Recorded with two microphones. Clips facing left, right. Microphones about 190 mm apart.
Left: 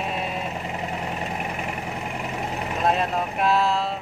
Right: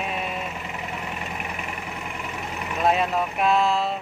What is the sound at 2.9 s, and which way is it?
Speech, centre (ahead or behind).